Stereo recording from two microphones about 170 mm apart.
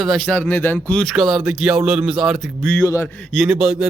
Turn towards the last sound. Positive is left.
turn(degrees=-5)  # may be behind; listen again after turning